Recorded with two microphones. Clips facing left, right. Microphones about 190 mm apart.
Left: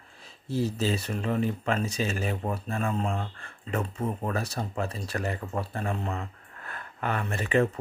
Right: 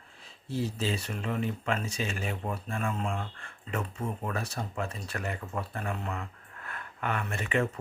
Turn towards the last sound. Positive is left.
turn(degrees=35)  # may be behind; listen again after turning